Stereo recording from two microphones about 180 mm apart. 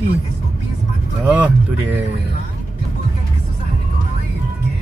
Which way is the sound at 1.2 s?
10° right (ahead or behind).